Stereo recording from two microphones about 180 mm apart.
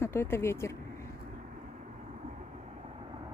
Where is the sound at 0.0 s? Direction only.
15° left (ahead or behind).